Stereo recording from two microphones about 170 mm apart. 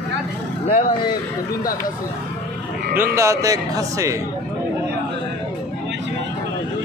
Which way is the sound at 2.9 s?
15° right (ahead or behind).